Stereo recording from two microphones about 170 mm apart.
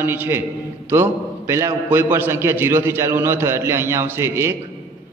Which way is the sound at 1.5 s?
15° right (ahead or behind).